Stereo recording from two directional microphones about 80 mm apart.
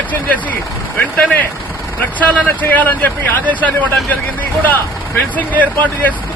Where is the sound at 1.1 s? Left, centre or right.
Left.